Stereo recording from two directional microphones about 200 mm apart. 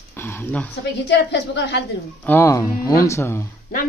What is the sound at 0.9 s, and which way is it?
Speech, 60° left (ahead or behind).